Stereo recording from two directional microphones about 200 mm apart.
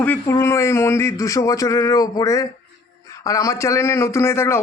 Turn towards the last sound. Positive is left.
turn(degrees=10)  # may be behind; listen again after turning